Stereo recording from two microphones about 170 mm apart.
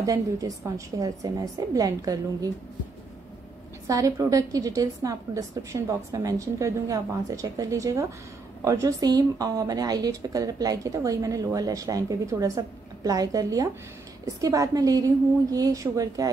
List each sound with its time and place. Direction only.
0.0 s a woman's voice: 20° right (ahead or behind)
3.8 s a woman's voice: 20° right (ahead or behind)